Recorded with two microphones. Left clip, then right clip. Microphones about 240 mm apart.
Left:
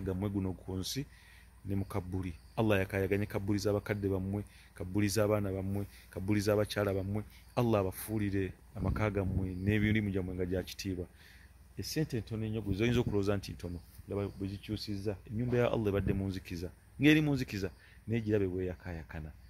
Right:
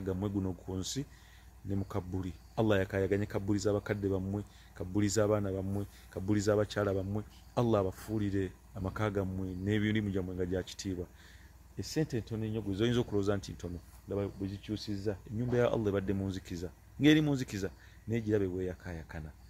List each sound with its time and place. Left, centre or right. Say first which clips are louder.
0.0 s speech: right 1 dB; centre